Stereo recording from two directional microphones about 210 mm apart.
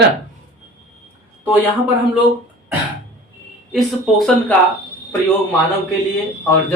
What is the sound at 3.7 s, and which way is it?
Speech, centre (ahead or behind).